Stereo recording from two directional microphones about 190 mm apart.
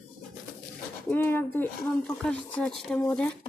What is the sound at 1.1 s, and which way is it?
Speech, 10° left (ahead or behind).